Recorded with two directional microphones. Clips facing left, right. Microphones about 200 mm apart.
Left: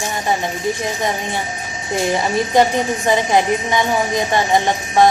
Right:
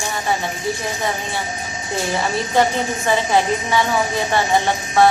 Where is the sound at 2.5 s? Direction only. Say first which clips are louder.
Left 2 dB; 15° left (ahead or behind).